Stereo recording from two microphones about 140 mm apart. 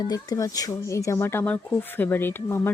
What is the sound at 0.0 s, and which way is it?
Speech, 25° left (ahead or behind).